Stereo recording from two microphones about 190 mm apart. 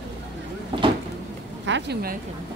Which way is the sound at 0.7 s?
25° right (ahead or behind).